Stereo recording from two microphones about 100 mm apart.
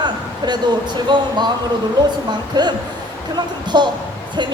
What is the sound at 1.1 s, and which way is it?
Speech, 50° right (ahead or behind).